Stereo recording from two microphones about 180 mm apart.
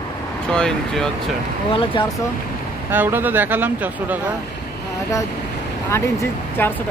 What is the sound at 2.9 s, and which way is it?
Speech, 10° right (ahead or behind).